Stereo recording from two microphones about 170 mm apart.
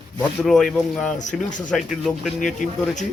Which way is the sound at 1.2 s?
45° left (ahead or behind).